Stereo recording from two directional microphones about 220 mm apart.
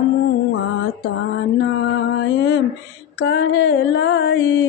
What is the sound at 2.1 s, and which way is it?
Mantra, 55° left (ahead or behind).